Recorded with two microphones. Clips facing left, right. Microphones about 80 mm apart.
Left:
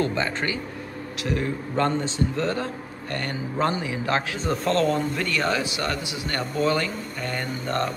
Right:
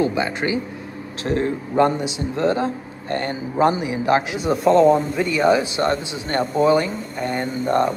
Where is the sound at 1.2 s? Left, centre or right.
Right.